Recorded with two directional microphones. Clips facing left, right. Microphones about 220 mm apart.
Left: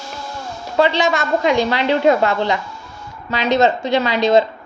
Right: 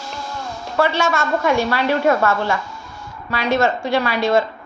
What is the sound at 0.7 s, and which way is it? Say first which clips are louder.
A woman's voice: left 3 dB; 15° left (ahead or behind).